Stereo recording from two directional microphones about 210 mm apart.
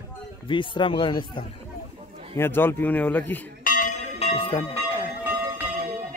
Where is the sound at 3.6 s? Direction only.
40° left (ahead or behind).